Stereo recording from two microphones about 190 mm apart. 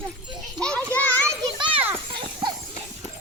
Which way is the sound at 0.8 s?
15° right (ahead or behind).